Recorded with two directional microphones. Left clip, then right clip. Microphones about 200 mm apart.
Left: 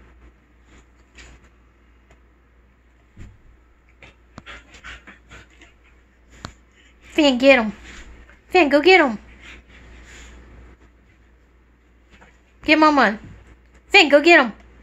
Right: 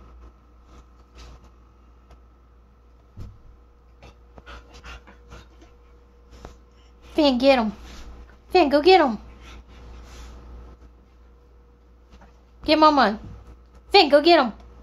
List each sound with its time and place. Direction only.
7.2 s speech: 20° left (ahead or behind)
12.5 s a woman's voice: 20° left (ahead or behind)